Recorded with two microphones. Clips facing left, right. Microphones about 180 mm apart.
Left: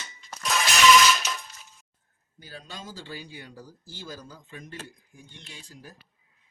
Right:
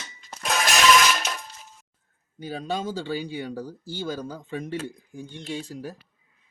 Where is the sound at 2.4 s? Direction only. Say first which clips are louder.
Right 13 dB; 75° right (ahead or behind).